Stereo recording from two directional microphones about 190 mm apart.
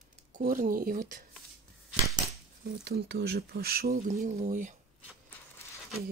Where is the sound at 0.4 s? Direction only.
50° right (ahead or behind).